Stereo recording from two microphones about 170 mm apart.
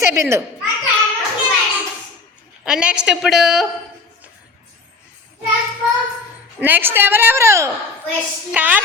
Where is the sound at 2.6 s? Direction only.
5° right (ahead or behind).